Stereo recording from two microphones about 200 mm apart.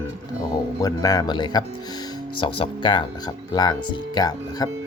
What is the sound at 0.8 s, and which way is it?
Speech, 20° left (ahead or behind).